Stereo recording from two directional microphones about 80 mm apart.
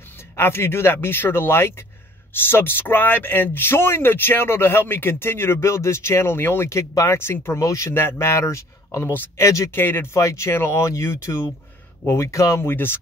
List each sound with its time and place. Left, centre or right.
0.4 s speech: left
7.6 s speech: left
7.9 s speech: left
9.1 s speech: left
10.1 s speech: left